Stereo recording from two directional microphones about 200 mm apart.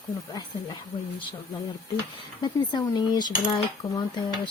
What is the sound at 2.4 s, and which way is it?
Speech, 20° left (ahead or behind).